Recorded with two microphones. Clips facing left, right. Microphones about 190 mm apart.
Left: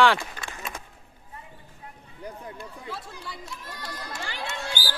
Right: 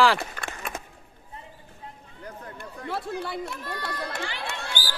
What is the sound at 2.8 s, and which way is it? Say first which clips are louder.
Speech: right 11 dB; 60° right (ahead or behind).